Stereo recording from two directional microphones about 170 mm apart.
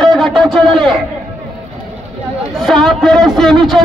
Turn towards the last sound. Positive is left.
turn(degrees=0)  # may be behind; listen again after turning